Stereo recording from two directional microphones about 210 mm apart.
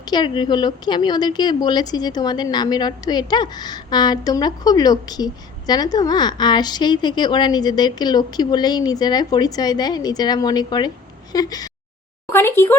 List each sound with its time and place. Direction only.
0.1 s speech: 20° left (ahead or behind)